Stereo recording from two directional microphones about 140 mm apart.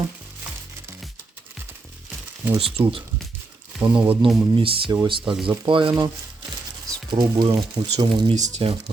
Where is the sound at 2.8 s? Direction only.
35° right (ahead or behind).